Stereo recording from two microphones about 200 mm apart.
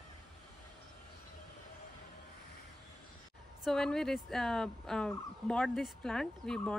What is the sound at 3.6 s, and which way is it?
Speech, 5° left (ahead or behind).